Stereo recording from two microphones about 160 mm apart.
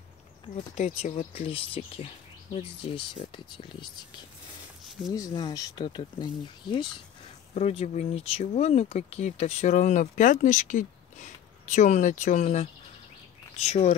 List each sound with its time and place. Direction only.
0.7 s speech: 50° left (ahead or behind); by 3.7 s 30° left (ahead or behind)
5.1 s speech: 25° left (ahead or behind)
7.5 s speech: 40° left (ahead or behind)